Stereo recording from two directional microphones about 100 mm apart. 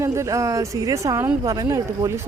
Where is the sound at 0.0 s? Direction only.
30° right (ahead or behind).